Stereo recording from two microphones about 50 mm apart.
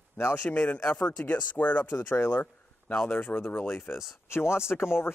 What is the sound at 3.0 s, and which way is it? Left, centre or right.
Speech, left.